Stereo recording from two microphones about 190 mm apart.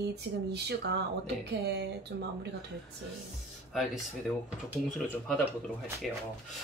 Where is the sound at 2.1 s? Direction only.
60° right (ahead or behind).